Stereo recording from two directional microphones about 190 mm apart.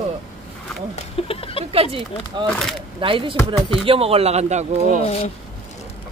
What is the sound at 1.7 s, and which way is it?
Speech, 30° right (ahead or behind).